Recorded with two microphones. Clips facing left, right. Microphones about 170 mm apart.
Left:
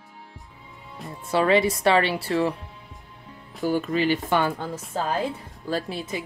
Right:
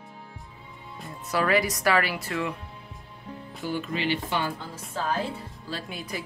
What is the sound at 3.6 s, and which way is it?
Speech, 45° left (ahead or behind).